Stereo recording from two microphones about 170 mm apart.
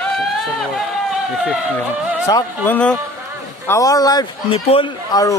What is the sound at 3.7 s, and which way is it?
Speech, 20° left (ahead or behind).